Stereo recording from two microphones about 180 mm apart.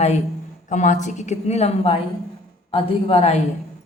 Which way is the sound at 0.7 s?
45° left (ahead or behind).